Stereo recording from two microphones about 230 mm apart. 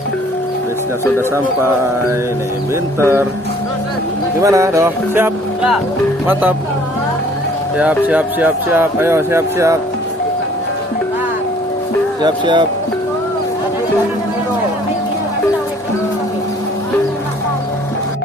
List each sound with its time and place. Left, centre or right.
3.0 s speech: centre
4.4 s speech: centre
7.8 s speech: centre
12.2 s speech: right